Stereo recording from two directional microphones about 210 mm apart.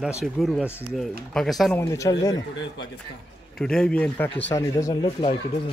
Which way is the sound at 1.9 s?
15° left (ahead or behind).